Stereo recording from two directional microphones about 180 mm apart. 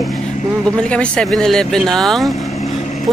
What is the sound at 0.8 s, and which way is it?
Speech, 5° left (ahead or behind).